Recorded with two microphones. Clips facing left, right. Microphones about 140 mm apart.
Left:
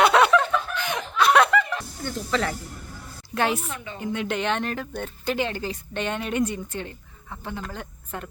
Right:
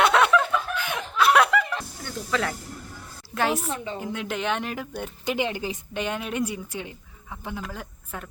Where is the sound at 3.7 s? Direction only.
30° right (ahead or behind).